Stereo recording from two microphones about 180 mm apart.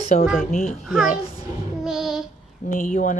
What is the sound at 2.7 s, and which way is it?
Speech, 50° left (ahead or behind).